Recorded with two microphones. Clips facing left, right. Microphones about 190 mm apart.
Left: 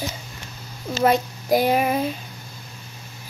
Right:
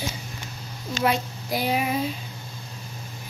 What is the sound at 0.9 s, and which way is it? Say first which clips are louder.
Speech: left 5 dB; 45° left (ahead or behind).